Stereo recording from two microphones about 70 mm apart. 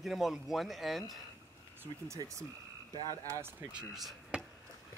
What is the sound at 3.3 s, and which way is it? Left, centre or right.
Speech, right.